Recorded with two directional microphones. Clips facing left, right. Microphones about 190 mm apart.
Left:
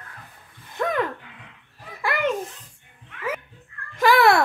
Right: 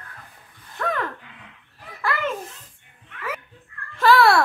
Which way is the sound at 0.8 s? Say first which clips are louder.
Left 3 dB; 20° left (ahead or behind).